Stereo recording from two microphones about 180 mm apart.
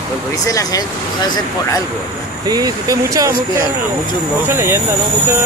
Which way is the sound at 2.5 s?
20° right (ahead or behind).